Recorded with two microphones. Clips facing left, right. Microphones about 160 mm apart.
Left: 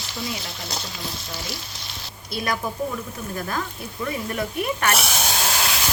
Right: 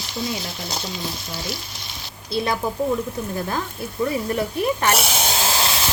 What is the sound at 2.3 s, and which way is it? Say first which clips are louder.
Speech: right 4 dB; 25° right (ahead or behind).